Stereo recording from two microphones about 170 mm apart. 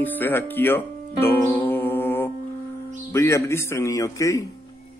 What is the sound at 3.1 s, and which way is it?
Speech, 15° left (ahead or behind).